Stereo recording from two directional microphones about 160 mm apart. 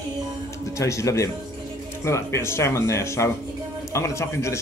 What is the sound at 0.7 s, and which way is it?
Speech, 20° left (ahead or behind).